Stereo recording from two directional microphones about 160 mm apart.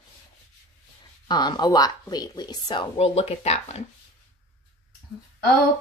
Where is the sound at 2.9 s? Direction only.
40° left (ahead or behind).